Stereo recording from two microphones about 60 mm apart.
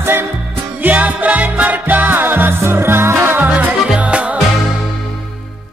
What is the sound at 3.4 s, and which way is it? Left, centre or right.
Music, right.